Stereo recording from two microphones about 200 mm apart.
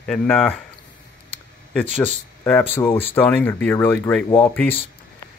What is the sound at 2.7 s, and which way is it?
Speech, 15° left (ahead or behind).